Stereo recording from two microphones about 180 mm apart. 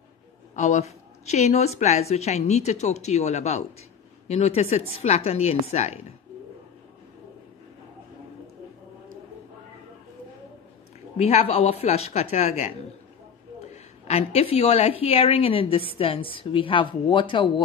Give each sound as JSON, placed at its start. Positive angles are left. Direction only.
{"t": 0.6, "sound": "a woman's voice", "side_deg": 40}
{"t": 11.1, "sound": "a woman's voice", "side_deg": 35}